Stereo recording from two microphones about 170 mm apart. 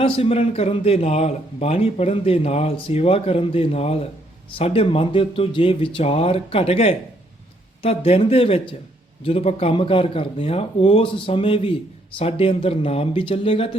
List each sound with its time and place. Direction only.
0.0 s a man's voice: 35° left (ahead or behind)